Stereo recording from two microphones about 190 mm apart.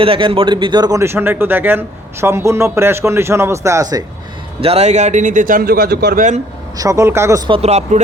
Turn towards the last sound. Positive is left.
turn(degrees=-35)  # may be behind; listen again after turning